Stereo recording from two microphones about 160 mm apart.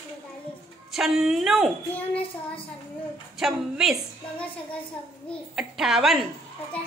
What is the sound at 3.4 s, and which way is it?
Speech, 5° right (ahead or behind).